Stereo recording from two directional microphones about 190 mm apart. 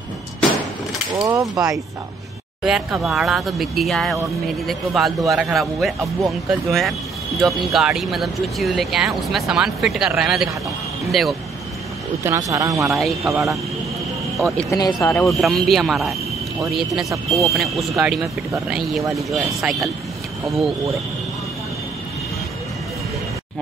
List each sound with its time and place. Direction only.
1.2 s speech: 20° right (ahead or behind)
2.6 s speech: 5° right (ahead or behind)
12.2 s speech: 15° right (ahead or behind)
14.7 s speech: 15° left (ahead or behind)
15.3 s speech: centre (ahead or behind)
17.3 s speech: centre (ahead or behind)